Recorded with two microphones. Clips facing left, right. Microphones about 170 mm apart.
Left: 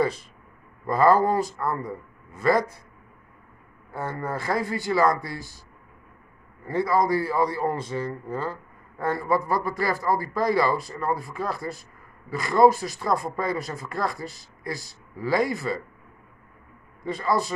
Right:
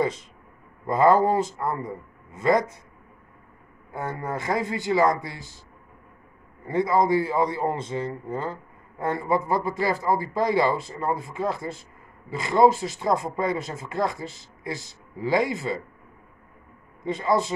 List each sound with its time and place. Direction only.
0.0 s a man's voice: 20° right (ahead or behind)
3.9 s a man's voice: 20° right (ahead or behind)
6.6 s a man's voice: 20° right (ahead or behind)
17.0 s a man's voice: 20° right (ahead or behind)